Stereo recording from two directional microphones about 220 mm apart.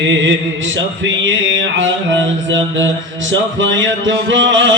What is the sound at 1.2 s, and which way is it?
Music, 60° right (ahead or behind).